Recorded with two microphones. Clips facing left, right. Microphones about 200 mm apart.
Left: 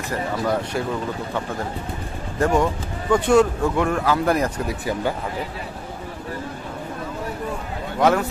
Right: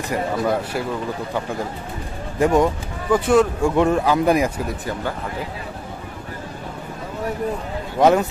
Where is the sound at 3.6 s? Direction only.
20° right (ahead or behind).